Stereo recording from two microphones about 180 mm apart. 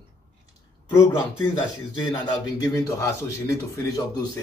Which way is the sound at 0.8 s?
15° left (ahead or behind).